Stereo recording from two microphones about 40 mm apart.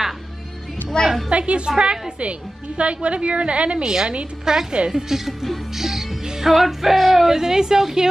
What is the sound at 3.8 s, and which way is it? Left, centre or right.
Speech, centre.